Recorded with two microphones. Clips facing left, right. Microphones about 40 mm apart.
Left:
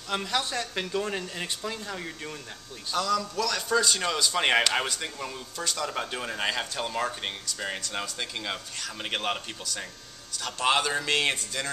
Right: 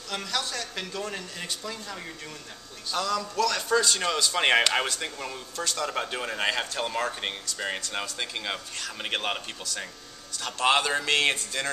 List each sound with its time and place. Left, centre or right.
0.1 s a man's voice: left
2.9 s a man's voice: centre